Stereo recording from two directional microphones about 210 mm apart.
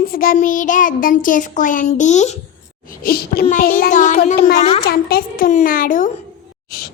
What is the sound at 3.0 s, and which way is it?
Child singing, 45° left (ahead or behind).